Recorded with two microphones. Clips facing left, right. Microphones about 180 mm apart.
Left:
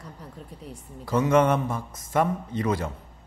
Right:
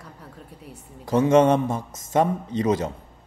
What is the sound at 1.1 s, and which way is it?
A man's voice, 25° right (ahead or behind).